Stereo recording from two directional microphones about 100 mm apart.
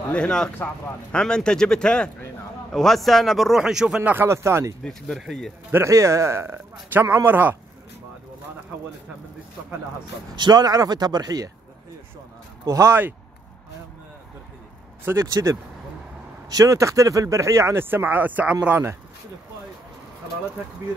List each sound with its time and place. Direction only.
0.1 s speech: 10° left (ahead or behind); by 4.7 s 25° right (ahead or behind)
4.8 s speech: 5° left (ahead or behind)
5.7 s speech: 30° right (ahead or behind)
10.3 s speech: 45° right (ahead or behind)
12.6 s speech: 30° right (ahead or behind)
15.0 s speech: 30° right (ahead or behind)